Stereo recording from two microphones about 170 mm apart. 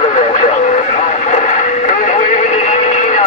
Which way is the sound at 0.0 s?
40° left (ahead or behind).